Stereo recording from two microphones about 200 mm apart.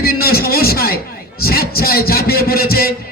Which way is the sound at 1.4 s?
50° left (ahead or behind).